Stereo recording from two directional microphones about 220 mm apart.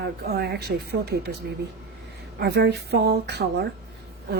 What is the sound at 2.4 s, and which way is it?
Speech, 50° right (ahead or behind).